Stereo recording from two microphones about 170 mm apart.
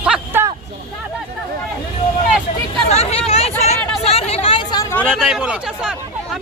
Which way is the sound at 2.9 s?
40° left (ahead or behind).